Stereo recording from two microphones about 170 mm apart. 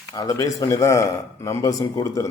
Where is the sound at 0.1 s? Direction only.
20° left (ahead or behind).